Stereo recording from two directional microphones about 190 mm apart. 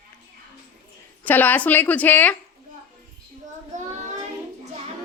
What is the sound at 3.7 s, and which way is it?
Child singing, 40° right (ahead or behind).